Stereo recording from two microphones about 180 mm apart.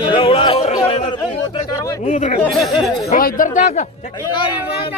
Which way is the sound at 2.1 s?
40° left (ahead or behind).